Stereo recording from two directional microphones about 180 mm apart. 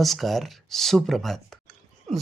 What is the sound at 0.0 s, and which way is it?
Speech, centre (ahead or behind).